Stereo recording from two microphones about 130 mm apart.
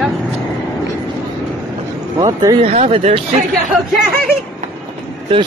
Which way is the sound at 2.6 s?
50° right (ahead or behind).